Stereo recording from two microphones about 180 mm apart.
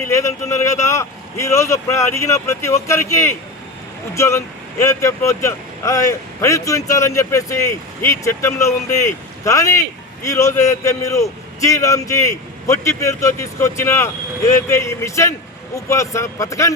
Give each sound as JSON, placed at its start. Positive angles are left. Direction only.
{"t": 0.1, "sound": "speech", "side_deg": 15}